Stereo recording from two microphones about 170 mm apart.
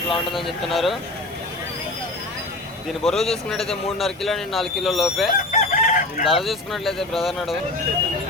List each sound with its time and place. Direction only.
0.1 s speech: centre (ahead or behind)
3.0 s speech: centre (ahead or behind)
5.5 s chicken: 50° left (ahead or behind)
6.2 s speech: centre (ahead or behind)